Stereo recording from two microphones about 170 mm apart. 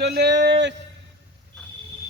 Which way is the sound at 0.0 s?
80° right.